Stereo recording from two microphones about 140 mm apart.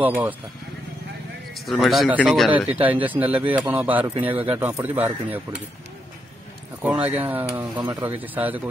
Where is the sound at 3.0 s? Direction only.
10° right (ahead or behind).